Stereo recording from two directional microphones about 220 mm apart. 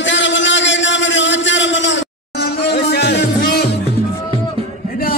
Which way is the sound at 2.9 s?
50° left (ahead or behind).